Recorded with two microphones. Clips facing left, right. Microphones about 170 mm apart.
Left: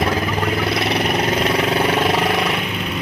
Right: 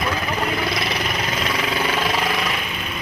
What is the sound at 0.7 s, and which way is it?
Vehicle, 60° left (ahead or behind).